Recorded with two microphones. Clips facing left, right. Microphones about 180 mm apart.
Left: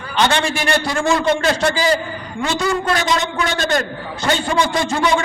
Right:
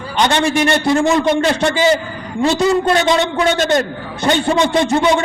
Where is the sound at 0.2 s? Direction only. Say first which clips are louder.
Right 3 dB; 20° right (ahead or behind).